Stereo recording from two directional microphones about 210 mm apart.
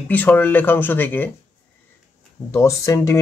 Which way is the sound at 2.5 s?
15° left (ahead or behind).